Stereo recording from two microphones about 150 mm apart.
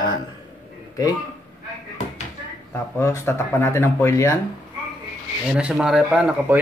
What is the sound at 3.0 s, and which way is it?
Speech, 20° left (ahead or behind).